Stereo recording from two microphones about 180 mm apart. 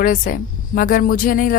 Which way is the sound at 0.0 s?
50° left (ahead or behind).